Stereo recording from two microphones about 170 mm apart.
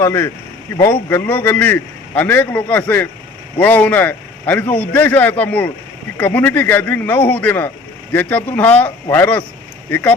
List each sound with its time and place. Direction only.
0.0 s a man's voice: 15° left (ahead or behind)